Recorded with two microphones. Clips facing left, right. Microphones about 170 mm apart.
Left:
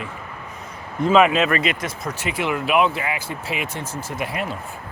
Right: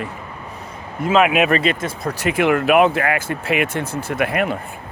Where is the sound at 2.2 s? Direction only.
55° right (ahead or behind).